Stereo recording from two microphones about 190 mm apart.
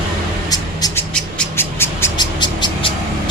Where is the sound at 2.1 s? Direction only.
25° left (ahead or behind).